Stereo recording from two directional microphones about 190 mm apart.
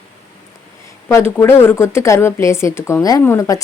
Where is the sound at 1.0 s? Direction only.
15° left (ahead or behind).